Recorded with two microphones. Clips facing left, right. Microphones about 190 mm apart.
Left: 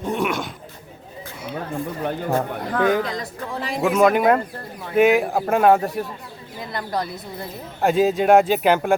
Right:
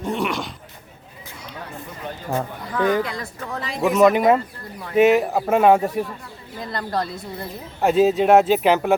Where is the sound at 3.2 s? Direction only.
10° left (ahead or behind).